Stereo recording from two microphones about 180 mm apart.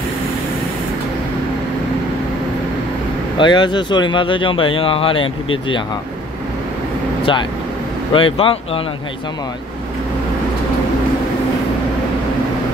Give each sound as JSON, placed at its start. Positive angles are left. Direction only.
{"t": 3.3, "sound": "speech", "side_deg": 25}
{"t": 8.1, "sound": "speech", "side_deg": 30}